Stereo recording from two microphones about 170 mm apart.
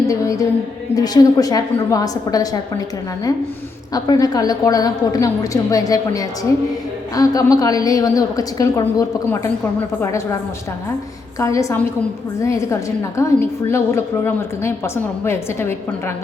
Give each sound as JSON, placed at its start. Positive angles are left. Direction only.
{"t": 0.1, "sound": "a woman's voice", "side_deg": 20}
{"t": 3.9, "sound": "a woman's voice", "side_deg": 25}
{"t": 11.3, "sound": "a woman's voice", "side_deg": 20}